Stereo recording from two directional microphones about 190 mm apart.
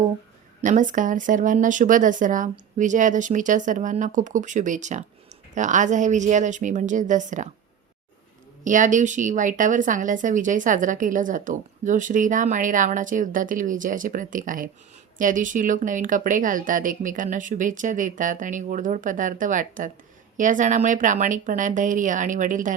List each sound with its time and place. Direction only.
0.6 s a woman's voice: 45° right (ahead or behind)
8.6 s a woman's voice: 40° right (ahead or behind)